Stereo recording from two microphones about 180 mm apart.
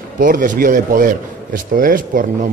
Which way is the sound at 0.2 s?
50° right (ahead or behind).